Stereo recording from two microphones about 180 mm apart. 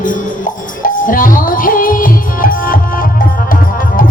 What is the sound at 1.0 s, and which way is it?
Music, 50° left (ahead or behind).